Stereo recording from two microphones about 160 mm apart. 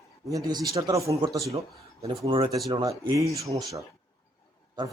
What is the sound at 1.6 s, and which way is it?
A man's voice, 40° right (ahead or behind).